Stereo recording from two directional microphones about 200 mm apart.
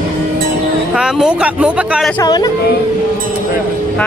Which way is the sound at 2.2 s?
20° left (ahead or behind).